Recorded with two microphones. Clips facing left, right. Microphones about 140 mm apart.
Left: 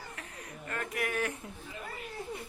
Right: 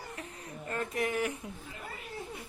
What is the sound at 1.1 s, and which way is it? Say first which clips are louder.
Speech: right 1 dB; 15° right (ahead or behind).